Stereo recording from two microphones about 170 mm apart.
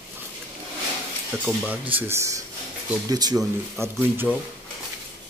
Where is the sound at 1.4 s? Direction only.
10° right (ahead or behind).